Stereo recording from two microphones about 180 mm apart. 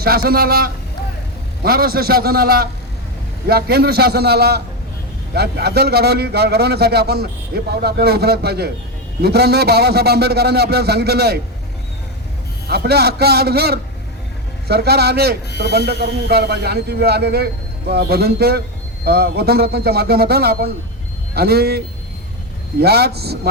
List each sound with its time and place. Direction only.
0.0 s a man's voice: 60° right (ahead or behind)
12.6 s a man's voice: 60° right (ahead or behind)
15.4 s speech: 65° left (ahead or behind)
15.9 s a man's voice: 65° right (ahead or behind)
22.8 s a man's voice: 60° right (ahead or behind)